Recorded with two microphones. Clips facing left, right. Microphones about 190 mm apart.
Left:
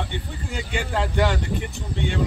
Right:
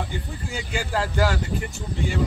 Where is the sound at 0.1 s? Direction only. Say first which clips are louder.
Even; centre (ahead or behind).